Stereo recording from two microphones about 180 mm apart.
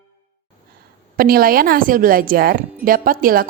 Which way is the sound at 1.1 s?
55° right (ahead or behind).